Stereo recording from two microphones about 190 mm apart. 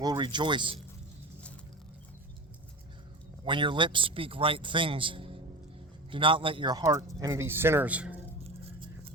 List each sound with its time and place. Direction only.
0.0 s a man's voice: 20° right (ahead or behind)
3.4 s a man's voice: 25° right (ahead or behind); by 8.1 s 5° right (ahead or behind)
8.4 s a sound: 30° right (ahead or behind)